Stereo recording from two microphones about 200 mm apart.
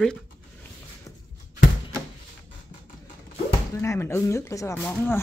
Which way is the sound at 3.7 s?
15° left (ahead or behind).